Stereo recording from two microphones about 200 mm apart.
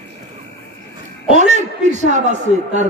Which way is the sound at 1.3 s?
35° right (ahead or behind).